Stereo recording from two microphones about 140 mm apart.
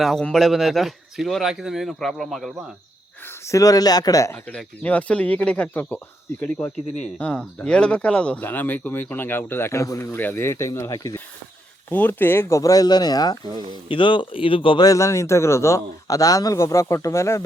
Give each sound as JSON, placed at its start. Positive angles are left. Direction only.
{"t": 0.0, "sound": "speech", "side_deg": 5}
{"t": 3.4, "sound": "a man's voice", "side_deg": 25}
{"t": 4.4, "sound": "a man's voice", "side_deg": 10}
{"t": 11.9, "sound": "a man's voice", "side_deg": 15}
{"t": 14.8, "sound": "a man's voice", "side_deg": 20}